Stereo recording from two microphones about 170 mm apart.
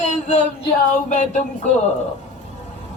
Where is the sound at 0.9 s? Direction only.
45° left (ahead or behind).